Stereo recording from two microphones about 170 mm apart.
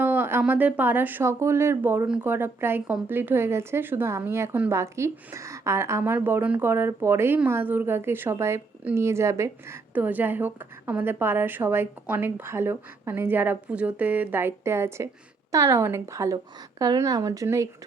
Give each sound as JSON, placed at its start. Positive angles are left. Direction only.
{"t": 0.0, "sound": "speech", "side_deg": -10}